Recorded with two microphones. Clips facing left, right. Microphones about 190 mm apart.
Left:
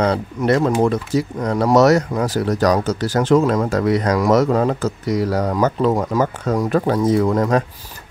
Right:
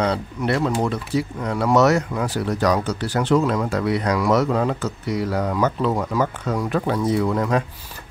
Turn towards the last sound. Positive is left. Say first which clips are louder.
# left 4 dB
turn(degrees=45)  # may be behind; listen again after turning